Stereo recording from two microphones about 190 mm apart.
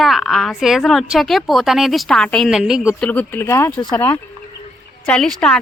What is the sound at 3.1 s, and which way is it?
A woman's voice, 10° left (ahead or behind).